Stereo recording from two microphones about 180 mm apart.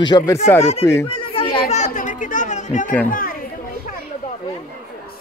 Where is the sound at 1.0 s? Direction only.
30° left (ahead or behind).